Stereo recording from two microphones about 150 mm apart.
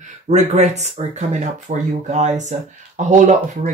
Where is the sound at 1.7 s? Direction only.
50° right (ahead or behind).